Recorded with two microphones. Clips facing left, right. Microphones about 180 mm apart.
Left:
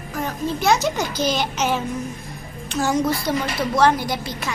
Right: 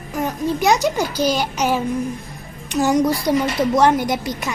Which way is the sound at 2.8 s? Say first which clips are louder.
Right 4 dB; 15° right (ahead or behind).